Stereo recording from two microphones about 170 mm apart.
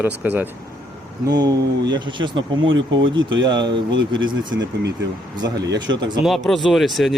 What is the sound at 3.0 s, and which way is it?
Speech, 90° right.